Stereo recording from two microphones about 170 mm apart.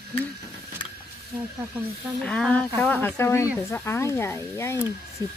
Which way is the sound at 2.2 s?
5° left (ahead or behind).